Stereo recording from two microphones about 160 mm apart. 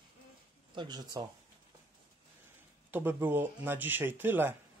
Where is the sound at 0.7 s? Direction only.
25° right (ahead or behind).